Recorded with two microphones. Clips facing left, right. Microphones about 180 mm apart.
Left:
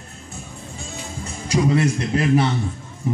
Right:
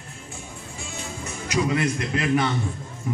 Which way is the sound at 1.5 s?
30° left (ahead or behind).